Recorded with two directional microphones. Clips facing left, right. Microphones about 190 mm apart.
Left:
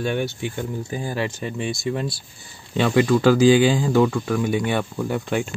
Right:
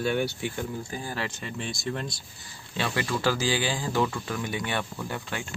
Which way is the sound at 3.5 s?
15° left (ahead or behind).